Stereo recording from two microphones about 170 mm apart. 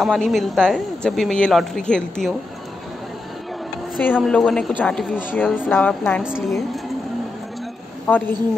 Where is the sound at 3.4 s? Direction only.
Centre (ahead or behind).